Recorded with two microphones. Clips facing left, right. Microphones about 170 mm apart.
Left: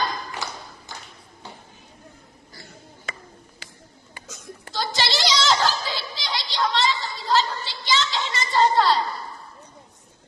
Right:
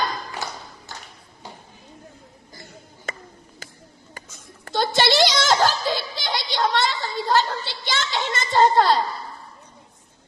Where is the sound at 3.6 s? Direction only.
45° right (ahead or behind).